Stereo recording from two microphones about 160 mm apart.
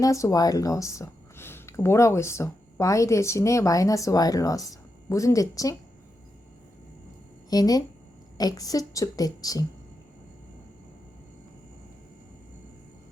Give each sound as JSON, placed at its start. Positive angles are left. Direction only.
{"t": 0.0, "sound": "speech", "side_deg": 20}
{"t": 7.5, "sound": "speech", "side_deg": 25}